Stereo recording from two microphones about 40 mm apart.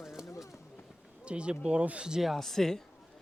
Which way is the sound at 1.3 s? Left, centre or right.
Right.